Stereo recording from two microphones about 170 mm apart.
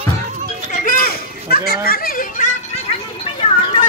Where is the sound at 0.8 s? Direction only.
60° left (ahead or behind).